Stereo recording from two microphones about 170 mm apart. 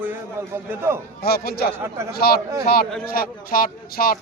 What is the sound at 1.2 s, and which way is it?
A man's voice, 65° left (ahead or behind).